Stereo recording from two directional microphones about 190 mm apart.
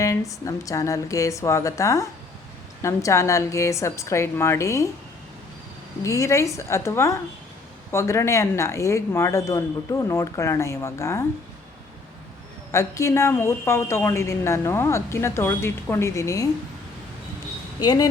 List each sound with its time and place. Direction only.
0.0 s a woman's voice: 15° left (ahead or behind)
6.0 s a woman's voice: 15° left (ahead or behind)
12.7 s a woman's voice: 15° left (ahead or behind)
17.7 s speech: 20° left (ahead or behind)